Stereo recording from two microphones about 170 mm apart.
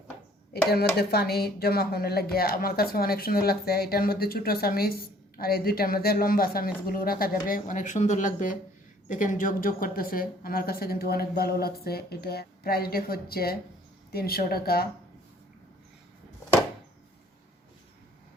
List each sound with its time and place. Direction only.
0.5 s a woman's voice: 70° left (ahead or behind)